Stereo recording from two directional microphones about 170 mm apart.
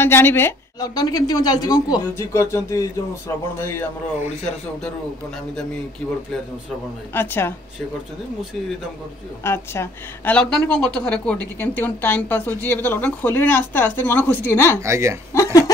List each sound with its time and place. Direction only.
0.0 s speech: 15° left (ahead or behind)
7.2 s speech: 15° left (ahead or behind)
9.4 s speech: 15° left (ahead or behind)
14.8 s speech: 15° right (ahead or behind)
15.3 s speech: 20° left (ahead or behind)